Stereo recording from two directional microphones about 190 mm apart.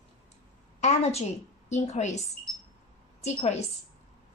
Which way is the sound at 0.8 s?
35° left (ahead or behind).